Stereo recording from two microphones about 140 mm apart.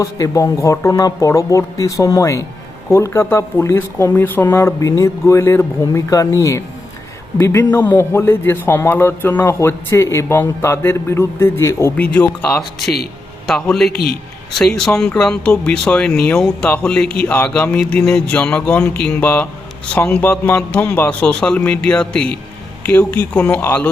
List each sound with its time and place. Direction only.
0.0 s a man's voice: 25° left (ahead or behind); by 13.9 s 5° left (ahead or behind)
13.9 s a man's voice: 90° left
14.6 s a man's voice: 5° left (ahead or behind)